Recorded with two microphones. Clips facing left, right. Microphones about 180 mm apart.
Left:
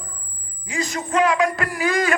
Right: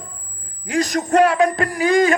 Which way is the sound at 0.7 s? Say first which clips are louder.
Right 7 dB; 75° right (ahead or behind).